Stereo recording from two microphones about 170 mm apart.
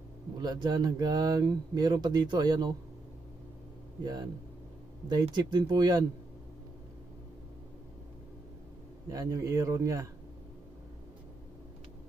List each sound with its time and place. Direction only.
0.4 s speech: 25° right (ahead or behind)
4.0 s speech: 25° right (ahead or behind)
9.1 s speech: 20° right (ahead or behind)